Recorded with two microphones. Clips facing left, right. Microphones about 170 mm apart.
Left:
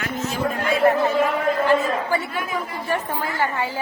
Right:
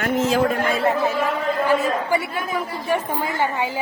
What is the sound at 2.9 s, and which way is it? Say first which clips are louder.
Speech: right 3 dB; 20° right (ahead or behind).